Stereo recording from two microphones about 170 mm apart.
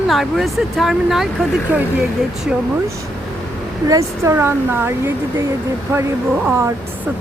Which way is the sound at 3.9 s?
15° right (ahead or behind).